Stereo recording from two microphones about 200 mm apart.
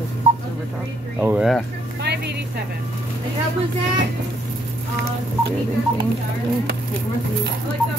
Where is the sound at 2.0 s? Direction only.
55° right (ahead or behind).